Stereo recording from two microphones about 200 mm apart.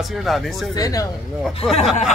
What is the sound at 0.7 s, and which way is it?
Speech, 20° left (ahead or behind).